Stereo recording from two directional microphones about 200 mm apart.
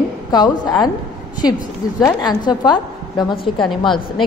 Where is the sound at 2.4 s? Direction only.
20° left (ahead or behind).